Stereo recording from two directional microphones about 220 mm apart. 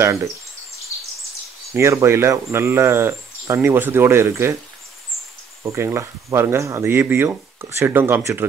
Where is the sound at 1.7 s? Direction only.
10° right (ahead or behind).